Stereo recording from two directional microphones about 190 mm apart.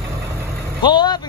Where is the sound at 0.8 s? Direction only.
20° left (ahead or behind).